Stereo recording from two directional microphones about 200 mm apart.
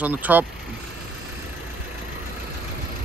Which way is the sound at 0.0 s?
10° right (ahead or behind).